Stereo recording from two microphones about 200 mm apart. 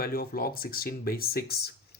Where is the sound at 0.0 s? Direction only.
50° left (ahead or behind).